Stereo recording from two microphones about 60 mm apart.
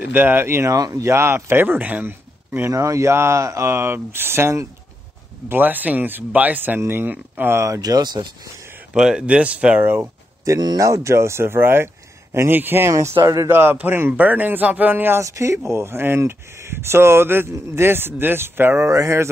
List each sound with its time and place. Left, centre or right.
0.1 s speech: right
0.7 s speech: right
1.0 s speech: right
2.7 s speech: right
5.5 s speech: right
7.5 s speech: right
8.9 s speech: centre
9.8 s speech: right
10.4 s speech: right
12.9 s speech: right
13.5 s speech: right
15.1 s speech: right
18.8 s speech: right